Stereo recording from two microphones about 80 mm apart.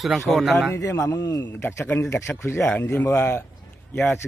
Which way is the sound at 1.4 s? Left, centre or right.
Left.